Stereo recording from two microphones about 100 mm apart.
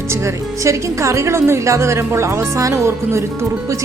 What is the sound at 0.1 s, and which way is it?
A woman's voice, 30° right (ahead or behind).